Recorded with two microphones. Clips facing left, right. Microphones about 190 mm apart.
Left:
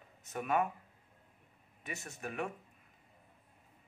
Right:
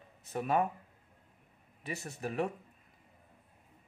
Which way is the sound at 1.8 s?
35° right (ahead or behind).